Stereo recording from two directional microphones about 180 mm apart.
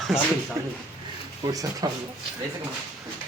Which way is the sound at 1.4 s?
20° right (ahead or behind).